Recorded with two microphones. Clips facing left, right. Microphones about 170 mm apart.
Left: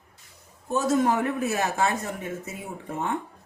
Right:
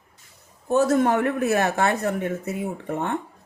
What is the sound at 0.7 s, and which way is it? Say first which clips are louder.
Speech: right 4 dB; 60° right (ahead or behind).